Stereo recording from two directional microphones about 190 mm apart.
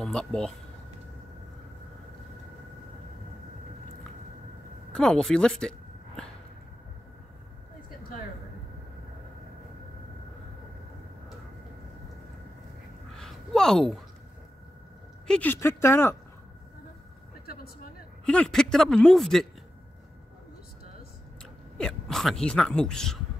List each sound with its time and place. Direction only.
0.0 s speech: 5° left (ahead or behind)
4.9 s speech: 5° left (ahead or behind)
13.1 s a sound: centre (ahead or behind)
15.2 s speech: 5° left (ahead or behind)
18.2 s speech: 5° left (ahead or behind)
21.7 s speech: 5° left (ahead or behind)